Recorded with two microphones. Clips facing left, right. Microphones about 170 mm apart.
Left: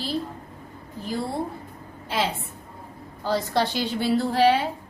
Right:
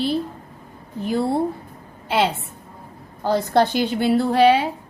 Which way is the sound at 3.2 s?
55° right (ahead or behind).